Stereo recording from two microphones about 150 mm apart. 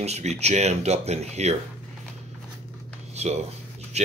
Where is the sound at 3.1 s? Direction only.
45° right (ahead or behind).